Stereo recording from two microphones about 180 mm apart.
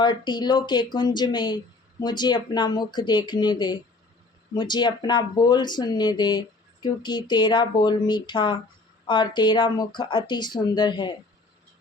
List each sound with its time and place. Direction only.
0.0 s speech: 25° left (ahead or behind)